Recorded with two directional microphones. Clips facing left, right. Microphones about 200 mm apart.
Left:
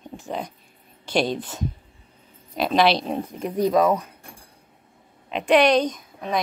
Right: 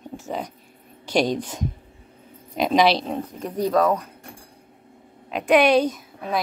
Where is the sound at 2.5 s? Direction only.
15° right (ahead or behind).